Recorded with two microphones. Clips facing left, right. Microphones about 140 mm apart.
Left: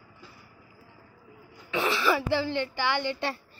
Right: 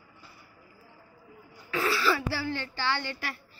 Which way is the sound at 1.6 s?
20° left (ahead or behind).